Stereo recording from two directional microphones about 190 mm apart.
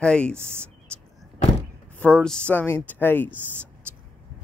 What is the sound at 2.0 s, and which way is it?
Speech, 5° left (ahead or behind).